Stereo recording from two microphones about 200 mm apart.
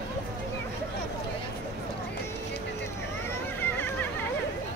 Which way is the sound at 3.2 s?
10° left (ahead or behind).